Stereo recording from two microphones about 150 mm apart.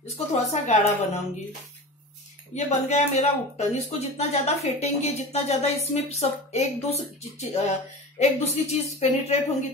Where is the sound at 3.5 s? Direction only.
45° left (ahead or behind).